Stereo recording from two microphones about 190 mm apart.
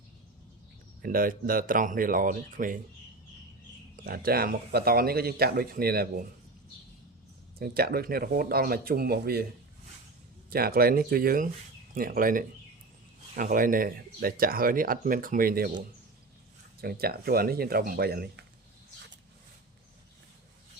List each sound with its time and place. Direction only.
1.0 s speech: 50° right (ahead or behind)
3.9 s speech: 50° right (ahead or behind)
7.6 s speech: 55° right (ahead or behind)
10.5 s speech: 55° right (ahead or behind)
16.8 s speech: 55° right (ahead or behind)